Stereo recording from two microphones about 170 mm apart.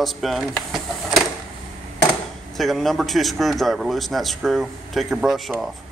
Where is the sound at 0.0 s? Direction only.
Centre (ahead or behind).